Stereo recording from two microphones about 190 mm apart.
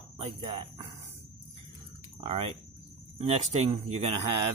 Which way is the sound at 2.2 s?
30° right (ahead or behind).